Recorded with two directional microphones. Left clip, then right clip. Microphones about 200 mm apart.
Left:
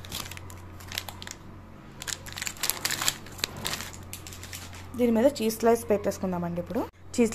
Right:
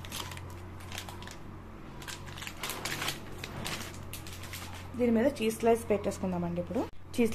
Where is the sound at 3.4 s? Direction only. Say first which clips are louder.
Left 11 dB; 60° left (ahead or behind).